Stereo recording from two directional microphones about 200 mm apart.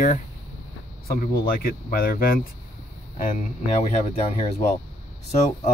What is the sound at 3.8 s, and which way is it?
Speech, 30° left (ahead or behind).